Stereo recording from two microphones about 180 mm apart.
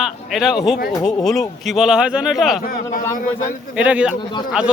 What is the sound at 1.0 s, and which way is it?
Speech, centre (ahead or behind).